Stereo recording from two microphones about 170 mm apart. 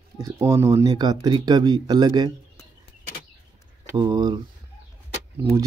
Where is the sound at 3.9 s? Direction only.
25° right (ahead or behind).